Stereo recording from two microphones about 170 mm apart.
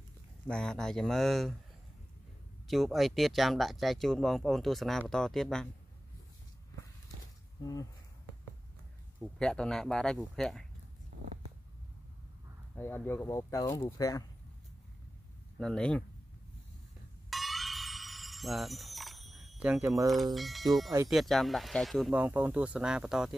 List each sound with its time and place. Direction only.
0.5 s speech: 5° left (ahead or behind)
2.7 s speech: centre (ahead or behind)
7.6 s speech: 25° left (ahead or behind)
9.2 s speech: 5° left (ahead or behind)
12.7 s speech: 10° left (ahead or behind)
15.6 s speech: 5° left (ahead or behind)
17.3 s music: centre (ahead or behind)
20.3 s speech: centre (ahead or behind)